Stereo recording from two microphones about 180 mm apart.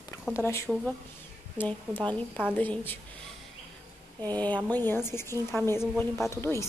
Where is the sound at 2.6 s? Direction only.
10° left (ahead or behind).